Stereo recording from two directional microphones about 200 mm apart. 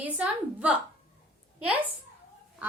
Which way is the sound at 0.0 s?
5° right (ahead or behind).